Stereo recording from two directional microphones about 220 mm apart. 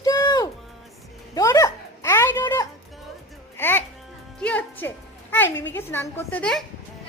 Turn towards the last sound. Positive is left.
turn(degrees=5)  # may be behind; listen again after turning